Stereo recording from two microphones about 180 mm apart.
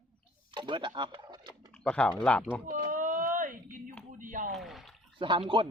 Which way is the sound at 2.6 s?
50° right (ahead or behind).